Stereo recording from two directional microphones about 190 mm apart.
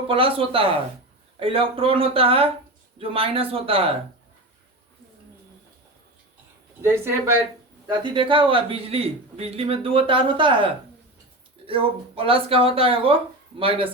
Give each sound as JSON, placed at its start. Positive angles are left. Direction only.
{"t": 0.1, "sound": "a man's voice", "side_deg": -30}
{"t": 6.8, "sound": "speech", "side_deg": -10}
{"t": 7.9, "sound": "a man's voice", "side_deg": -25}